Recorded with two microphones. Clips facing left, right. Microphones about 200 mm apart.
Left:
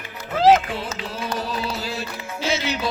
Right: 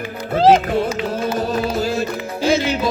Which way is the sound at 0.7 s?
50° right (ahead or behind).